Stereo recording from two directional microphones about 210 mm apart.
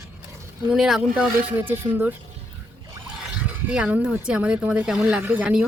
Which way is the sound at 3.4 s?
5° right (ahead or behind).